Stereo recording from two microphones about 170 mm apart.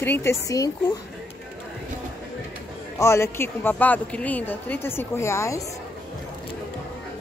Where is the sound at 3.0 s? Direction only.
15° left (ahead or behind).